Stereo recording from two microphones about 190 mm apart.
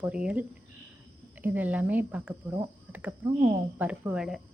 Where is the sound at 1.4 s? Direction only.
10° right (ahead or behind).